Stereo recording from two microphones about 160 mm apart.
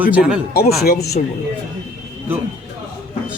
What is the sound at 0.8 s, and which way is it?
Speech, 85° left.